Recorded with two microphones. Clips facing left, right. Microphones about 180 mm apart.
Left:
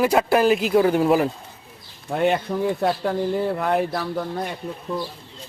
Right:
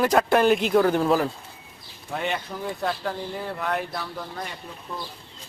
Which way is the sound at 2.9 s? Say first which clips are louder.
Left 7 dB; 50° left (ahead or behind).